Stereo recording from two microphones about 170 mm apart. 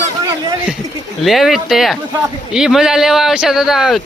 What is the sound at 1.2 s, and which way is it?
Speech, centre (ahead or behind).